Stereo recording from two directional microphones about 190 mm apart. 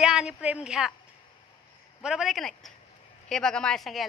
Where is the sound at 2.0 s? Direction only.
Centre (ahead or behind).